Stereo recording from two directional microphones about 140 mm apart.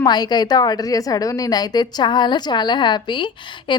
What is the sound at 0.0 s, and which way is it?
A woman's voice, 30° left (ahead or behind).